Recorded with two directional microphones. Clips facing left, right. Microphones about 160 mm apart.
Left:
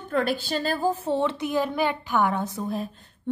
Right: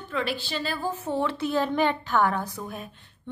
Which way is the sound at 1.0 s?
25° left (ahead or behind).